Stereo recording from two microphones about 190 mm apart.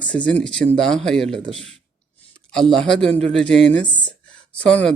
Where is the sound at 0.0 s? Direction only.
5° left (ahead or behind).